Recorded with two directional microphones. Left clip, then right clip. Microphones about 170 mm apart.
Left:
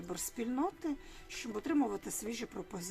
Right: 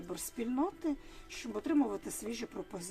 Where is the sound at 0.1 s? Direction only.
10° right (ahead or behind).